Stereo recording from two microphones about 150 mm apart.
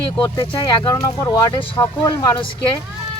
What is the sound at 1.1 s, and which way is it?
Speech, 25° left (ahead or behind).